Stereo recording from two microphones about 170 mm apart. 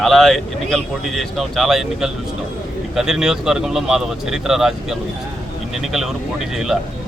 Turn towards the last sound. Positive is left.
turn(degrees=-5)  # may be behind; listen again after turning